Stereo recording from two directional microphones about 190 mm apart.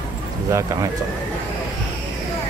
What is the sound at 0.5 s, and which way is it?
Speech, 15° right (ahead or behind).